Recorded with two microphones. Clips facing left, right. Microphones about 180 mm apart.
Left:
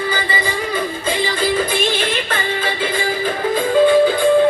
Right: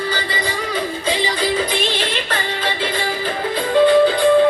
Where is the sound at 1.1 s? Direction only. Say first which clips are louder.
Left 1 dB; 50° left (ahead or behind).